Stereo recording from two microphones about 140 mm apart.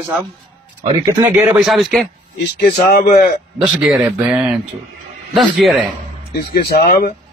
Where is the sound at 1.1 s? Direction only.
15° right (ahead or behind).